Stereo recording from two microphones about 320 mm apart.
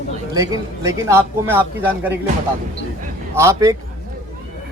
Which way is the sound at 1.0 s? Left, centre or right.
Centre.